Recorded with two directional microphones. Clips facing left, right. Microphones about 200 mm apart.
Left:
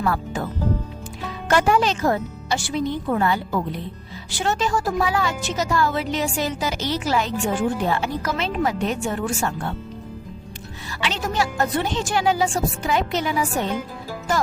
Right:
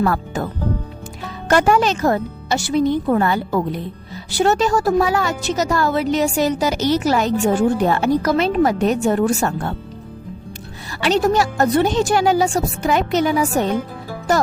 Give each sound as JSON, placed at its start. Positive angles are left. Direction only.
{"t": 0.0, "sound": "a woman's voice", "side_deg": -50}
{"t": 1.5, "sound": "a woman's voice", "side_deg": -45}
{"t": 4.4, "sound": "a woman's voice", "side_deg": -40}
{"t": 11.0, "sound": "a woman's voice", "side_deg": -40}